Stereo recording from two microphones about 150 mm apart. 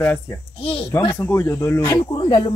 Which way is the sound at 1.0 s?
25° left (ahead or behind).